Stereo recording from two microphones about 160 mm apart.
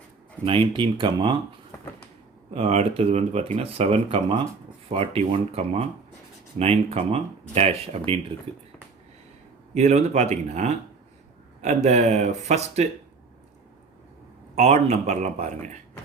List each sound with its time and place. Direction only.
0.4 s speech: 30° right (ahead or behind)
2.5 s speech: 40° right (ahead or behind)
9.7 s speech: 45° right (ahead or behind)
14.5 s speech: 45° right (ahead or behind)